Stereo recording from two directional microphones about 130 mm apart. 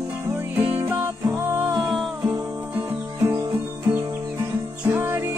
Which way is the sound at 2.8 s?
15° right (ahead or behind).